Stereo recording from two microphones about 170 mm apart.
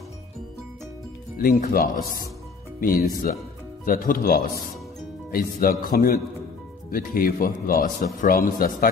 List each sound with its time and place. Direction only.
1.3 s speech: 50° left (ahead or behind)